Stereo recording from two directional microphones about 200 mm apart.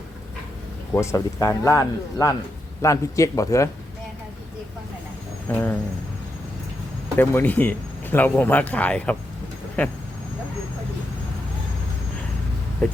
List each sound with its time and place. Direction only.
0.9 s speech: 15° left (ahead or behind)
5.5 s speech: 10° left (ahead or behind)
7.2 s speech: 10° left (ahead or behind)
12.8 s speech: 5° left (ahead or behind)